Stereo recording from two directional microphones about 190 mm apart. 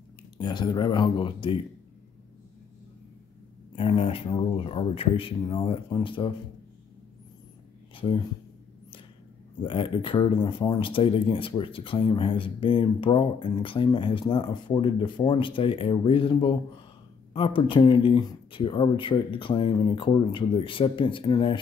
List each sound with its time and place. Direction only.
0.4 s speech: 25° left (ahead or behind)
3.7 s speech: 30° left (ahead or behind)
7.9 s a sound: 30° left (ahead or behind)
9.6 s speech: 25° left (ahead or behind)